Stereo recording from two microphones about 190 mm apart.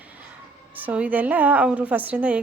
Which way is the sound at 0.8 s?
10° right (ahead or behind).